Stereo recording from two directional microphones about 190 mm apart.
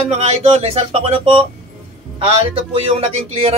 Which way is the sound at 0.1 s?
35° right (ahead or behind).